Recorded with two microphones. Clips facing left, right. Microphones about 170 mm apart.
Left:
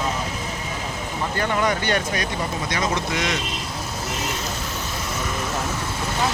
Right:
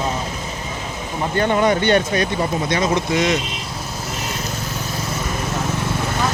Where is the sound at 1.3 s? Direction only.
25° right (ahead or behind).